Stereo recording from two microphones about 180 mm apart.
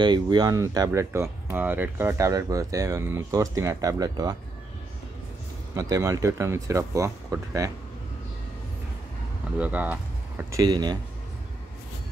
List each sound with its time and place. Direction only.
0.0 s speech: 25° right (ahead or behind)
5.8 s speech: 15° right (ahead or behind)
9.6 s speech: 10° right (ahead or behind)
10.6 s speech: 20° right (ahead or behind)